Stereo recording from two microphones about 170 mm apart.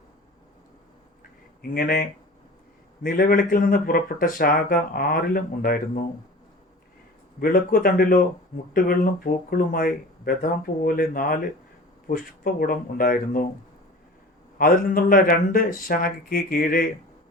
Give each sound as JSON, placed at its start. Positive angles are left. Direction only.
{"t": 1.7, "sound": "speech", "side_deg": 60}
{"t": 7.3, "sound": "speech", "side_deg": 60}
{"t": 14.6, "sound": "speech", "side_deg": 55}